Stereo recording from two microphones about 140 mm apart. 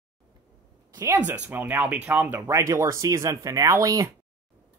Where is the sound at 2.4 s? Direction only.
25° right (ahead or behind).